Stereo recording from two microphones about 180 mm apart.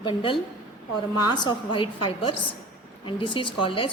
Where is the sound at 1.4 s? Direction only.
25° left (ahead or behind).